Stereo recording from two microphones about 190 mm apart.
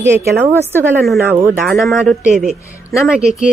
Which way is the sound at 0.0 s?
15° right (ahead or behind).